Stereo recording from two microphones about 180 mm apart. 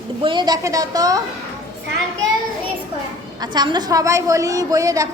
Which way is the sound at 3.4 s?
25° right (ahead or behind).